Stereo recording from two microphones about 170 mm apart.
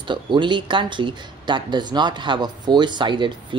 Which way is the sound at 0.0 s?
30° right (ahead or behind).